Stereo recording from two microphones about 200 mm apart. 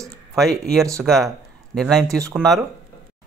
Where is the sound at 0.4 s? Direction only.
Centre (ahead or behind).